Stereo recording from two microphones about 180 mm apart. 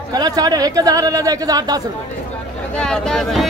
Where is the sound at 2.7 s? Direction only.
5° left (ahead or behind).